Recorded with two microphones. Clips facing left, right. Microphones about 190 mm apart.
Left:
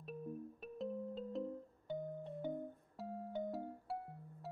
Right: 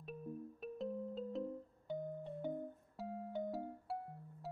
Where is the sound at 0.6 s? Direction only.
Centre (ahead or behind).